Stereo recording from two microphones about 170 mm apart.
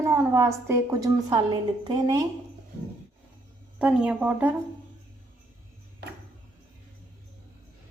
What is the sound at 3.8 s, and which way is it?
Speech, 5° right (ahead or behind).